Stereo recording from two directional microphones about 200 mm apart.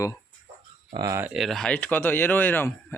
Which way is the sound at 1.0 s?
15° right (ahead or behind).